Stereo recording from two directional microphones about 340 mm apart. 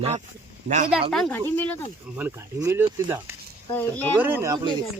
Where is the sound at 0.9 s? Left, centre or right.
Centre.